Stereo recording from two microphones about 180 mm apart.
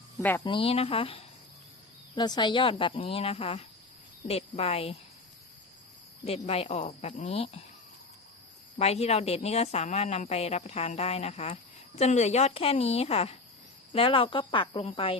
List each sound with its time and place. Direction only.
0.2 s speech: 10° left (ahead or behind)
0.4 s a woman's voice: 30° left (ahead or behind)
6.2 s a woman's voice: 35° left (ahead or behind)
8.8 s a woman's voice: 35° left (ahead or behind)